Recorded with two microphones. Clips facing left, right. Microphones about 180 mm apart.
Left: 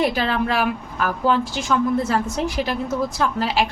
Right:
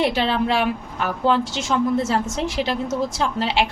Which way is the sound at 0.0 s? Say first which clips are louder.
Even; 25° right (ahead or behind).